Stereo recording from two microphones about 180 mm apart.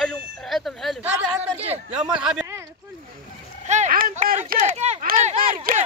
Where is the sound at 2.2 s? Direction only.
5° right (ahead or behind).